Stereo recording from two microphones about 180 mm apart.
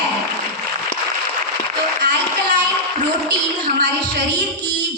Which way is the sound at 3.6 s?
60° right (ahead or behind).